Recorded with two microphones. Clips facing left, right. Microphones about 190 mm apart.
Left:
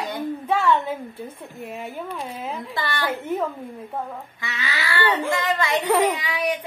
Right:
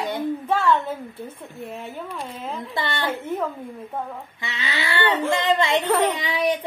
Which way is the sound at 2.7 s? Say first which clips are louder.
Right 1 dB; 25° right (ahead or behind).